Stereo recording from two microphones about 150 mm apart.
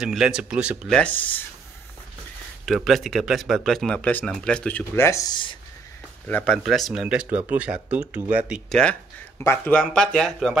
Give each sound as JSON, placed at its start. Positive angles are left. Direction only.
{"t": 0.0, "sound": "speech", "side_deg": -5}
{"t": 0.8, "sound": "speech", "side_deg": 5}
{"t": 2.6, "sound": "speech", "side_deg": 0}
{"t": 6.2, "sound": "speech", "side_deg": 10}
{"t": 9.4, "sound": "speech", "side_deg": 15}
{"t": 9.8, "sound": "speech", "side_deg": 5}